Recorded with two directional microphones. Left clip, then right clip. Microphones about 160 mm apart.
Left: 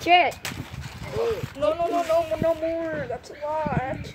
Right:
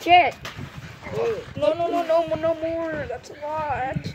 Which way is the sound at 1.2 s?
10° right (ahead or behind).